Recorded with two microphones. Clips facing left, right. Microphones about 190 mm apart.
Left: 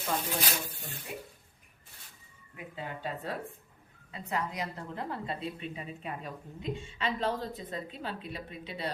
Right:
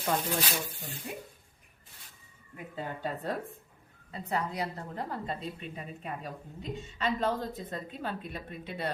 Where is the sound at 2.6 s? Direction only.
40° right (ahead or behind).